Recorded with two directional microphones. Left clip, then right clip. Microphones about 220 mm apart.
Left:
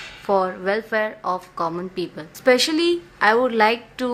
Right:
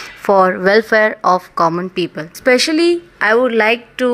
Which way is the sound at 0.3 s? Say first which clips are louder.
Right 10 dB; 40° right (ahead or behind).